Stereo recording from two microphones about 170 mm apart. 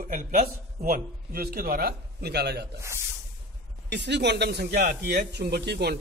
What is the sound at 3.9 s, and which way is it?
A man's voice, 90° right.